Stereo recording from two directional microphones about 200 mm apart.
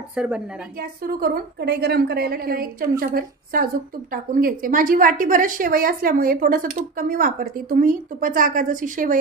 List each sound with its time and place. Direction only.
0.1 s a woman's voice: 5° right (ahead or behind)
0.7 s a woman's voice: 50° right (ahead or behind)